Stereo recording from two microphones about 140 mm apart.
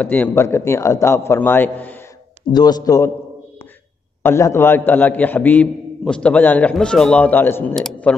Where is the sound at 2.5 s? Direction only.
30° left (ahead or behind).